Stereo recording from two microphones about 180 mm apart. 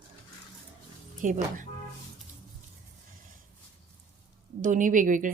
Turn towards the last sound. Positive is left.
turn(degrees=-45)  # may be behind; listen again after turning